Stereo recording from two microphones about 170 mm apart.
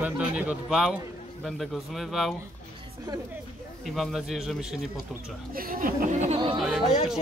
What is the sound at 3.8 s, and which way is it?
Speech, centre (ahead or behind).